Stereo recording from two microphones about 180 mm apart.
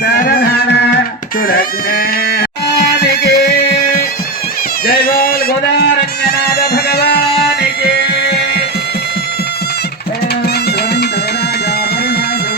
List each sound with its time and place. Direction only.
0.0 s music: 60° left (ahead or behind)
4.9 s a sound: 55° left (ahead or behind)
6.2 s music: 60° left (ahead or behind)